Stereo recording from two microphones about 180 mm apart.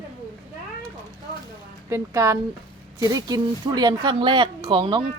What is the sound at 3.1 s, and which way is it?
Speech, 20° right (ahead or behind).